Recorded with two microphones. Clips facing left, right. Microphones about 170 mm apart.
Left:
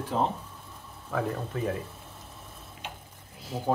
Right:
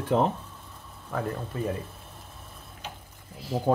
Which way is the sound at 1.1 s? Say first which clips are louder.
Left 1 dB; centre (ahead or behind).